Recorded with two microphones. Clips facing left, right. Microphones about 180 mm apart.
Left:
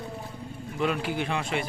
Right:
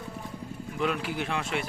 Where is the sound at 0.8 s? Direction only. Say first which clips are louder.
Left 2 dB; centre (ahead or behind).